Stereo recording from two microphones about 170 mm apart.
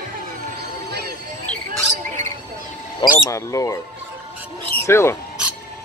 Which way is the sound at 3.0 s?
20° left (ahead or behind).